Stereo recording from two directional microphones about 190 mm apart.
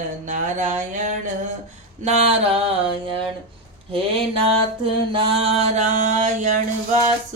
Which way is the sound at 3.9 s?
30° right (ahead or behind).